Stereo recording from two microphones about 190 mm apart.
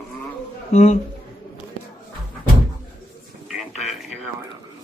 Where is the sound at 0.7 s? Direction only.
35° left (ahead or behind).